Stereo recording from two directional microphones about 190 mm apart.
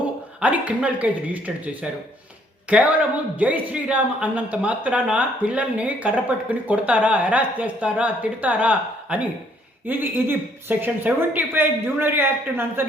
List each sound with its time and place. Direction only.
0.3 s a woman's voice: 5° right (ahead or behind)